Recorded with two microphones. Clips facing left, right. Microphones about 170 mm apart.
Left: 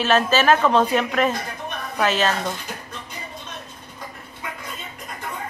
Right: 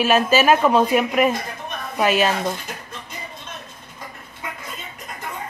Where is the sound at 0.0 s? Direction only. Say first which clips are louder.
Right 2 dB; 10° right (ahead or behind).